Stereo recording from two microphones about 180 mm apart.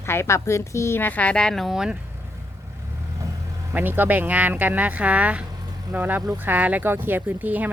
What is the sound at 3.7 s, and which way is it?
Speech, 10° right (ahead or behind).